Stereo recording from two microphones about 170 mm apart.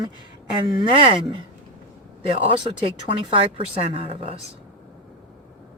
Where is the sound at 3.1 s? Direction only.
35° right (ahead or behind).